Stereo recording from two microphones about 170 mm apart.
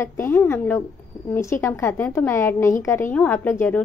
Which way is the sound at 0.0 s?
15° left (ahead or behind).